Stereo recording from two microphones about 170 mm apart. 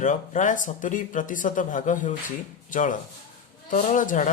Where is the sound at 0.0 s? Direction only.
50° left (ahead or behind).